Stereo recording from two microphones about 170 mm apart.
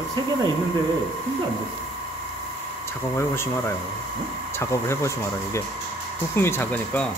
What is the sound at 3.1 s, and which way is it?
Speech, 15° left (ahead or behind).